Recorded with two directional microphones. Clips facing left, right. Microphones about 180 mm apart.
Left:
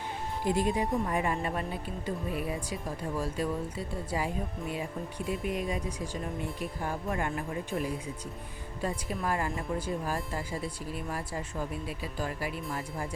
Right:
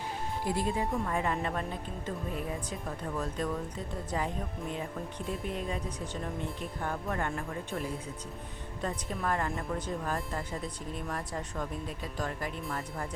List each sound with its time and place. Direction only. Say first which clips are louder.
0.4 s speech: left 4 dB; 20° left (ahead or behind)